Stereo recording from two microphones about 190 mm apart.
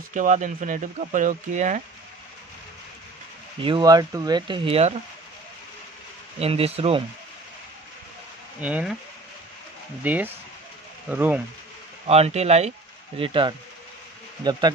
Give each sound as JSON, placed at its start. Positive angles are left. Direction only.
{"t": 0.1, "sound": "speech", "side_deg": -40}
{"t": 3.6, "sound": "speech", "side_deg": -25}
{"t": 6.4, "sound": "speech", "side_deg": -30}
{"t": 8.5, "sound": "speech", "side_deg": -5}
{"t": 10.0, "sound": "speech", "side_deg": -10}
{"t": 12.1, "sound": "speech", "side_deg": -35}